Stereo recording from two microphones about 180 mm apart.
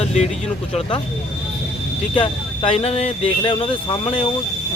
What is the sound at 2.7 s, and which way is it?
Speech, 35° left (ahead or behind).